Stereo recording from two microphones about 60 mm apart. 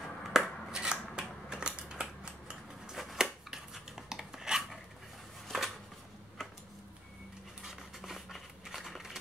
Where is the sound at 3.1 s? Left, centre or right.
Centre.